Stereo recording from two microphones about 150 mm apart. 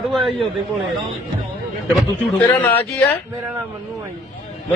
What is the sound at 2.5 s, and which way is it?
Speech, 10° left (ahead or behind).